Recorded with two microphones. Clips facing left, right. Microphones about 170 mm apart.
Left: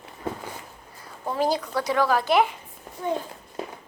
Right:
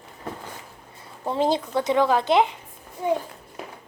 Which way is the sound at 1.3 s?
25° right (ahead or behind).